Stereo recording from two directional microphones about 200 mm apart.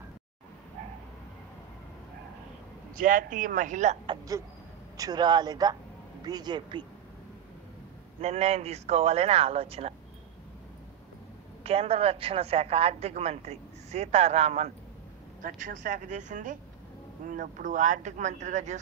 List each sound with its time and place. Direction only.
3.0 s a woman's voice: 40° right (ahead or behind); by 6.8 s 20° right (ahead or behind)
8.2 s a woman's voice: 35° right (ahead or behind)
11.6 s a woman's voice: 30° right (ahead or behind)